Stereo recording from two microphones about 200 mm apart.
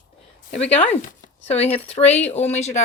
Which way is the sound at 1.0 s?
30° left (ahead or behind).